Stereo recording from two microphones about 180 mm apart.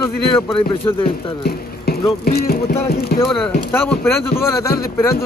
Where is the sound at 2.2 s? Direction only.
60° left (ahead or behind).